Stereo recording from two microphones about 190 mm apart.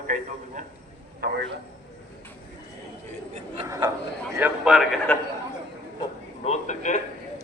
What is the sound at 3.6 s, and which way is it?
Speech, 20° right (ahead or behind).